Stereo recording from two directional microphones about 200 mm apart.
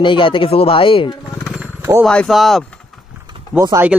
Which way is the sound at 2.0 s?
Centre (ahead or behind).